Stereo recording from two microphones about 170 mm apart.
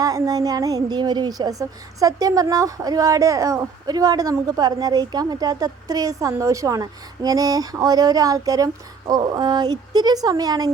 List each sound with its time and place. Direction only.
0.0 s a woman's voice: 20° right (ahead or behind)